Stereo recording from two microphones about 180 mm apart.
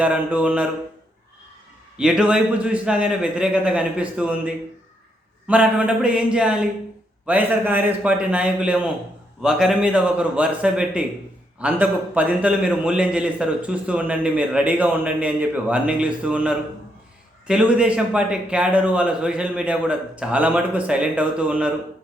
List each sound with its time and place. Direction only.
0.0 s a man's voice: 5° right (ahead or behind)
2.0 s a man's voice: 5° right (ahead or behind)